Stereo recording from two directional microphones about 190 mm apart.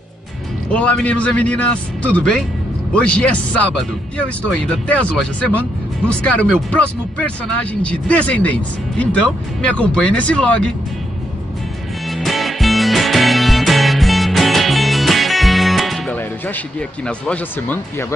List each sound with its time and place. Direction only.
0.7 s a man's voice: 5° left (ahead or behind)
12.1 s music: centre (ahead or behind)
16.2 s speech: 10° left (ahead or behind)